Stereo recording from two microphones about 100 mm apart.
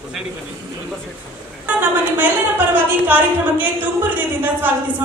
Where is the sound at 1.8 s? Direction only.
15° right (ahead or behind).